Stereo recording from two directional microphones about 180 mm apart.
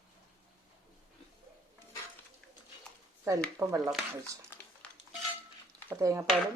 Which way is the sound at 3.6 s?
15° right (ahead or behind).